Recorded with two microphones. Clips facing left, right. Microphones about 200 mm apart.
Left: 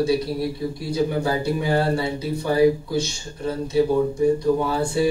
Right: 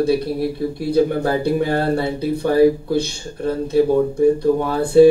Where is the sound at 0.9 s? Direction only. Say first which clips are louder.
Right 5 dB; 55° right (ahead or behind).